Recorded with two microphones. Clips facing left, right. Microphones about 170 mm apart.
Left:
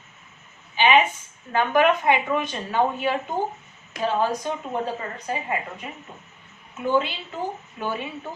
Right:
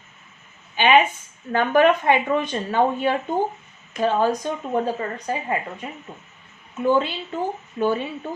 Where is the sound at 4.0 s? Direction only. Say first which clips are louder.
Right 3 dB; 45° right (ahead or behind).